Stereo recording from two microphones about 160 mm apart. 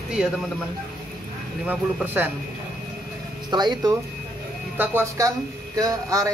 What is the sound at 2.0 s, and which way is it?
Speech, 10° right (ahead or behind).